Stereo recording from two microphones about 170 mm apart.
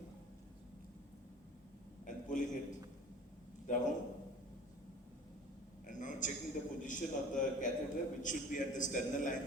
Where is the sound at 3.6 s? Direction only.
50° left (ahead or behind).